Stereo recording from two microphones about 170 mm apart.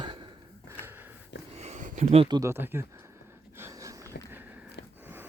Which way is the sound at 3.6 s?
15° right (ahead or behind).